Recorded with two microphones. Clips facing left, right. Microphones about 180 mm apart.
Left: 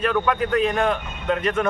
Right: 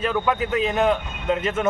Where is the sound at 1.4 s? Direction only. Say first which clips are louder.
Left 3 dB; 25° right (ahead or behind).